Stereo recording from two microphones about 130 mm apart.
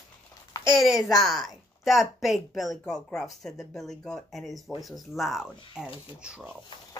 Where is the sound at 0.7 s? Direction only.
5° right (ahead or behind).